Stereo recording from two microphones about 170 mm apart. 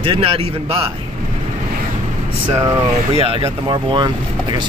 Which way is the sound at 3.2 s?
35° right (ahead or behind).